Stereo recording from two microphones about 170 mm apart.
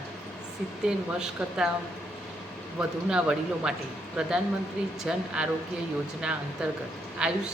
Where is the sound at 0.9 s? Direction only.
5° right (ahead or behind).